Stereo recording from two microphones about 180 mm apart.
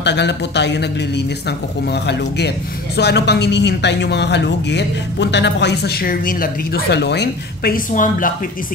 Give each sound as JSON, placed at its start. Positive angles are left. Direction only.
{"t": 0.0, "sound": "speech", "side_deg": 70}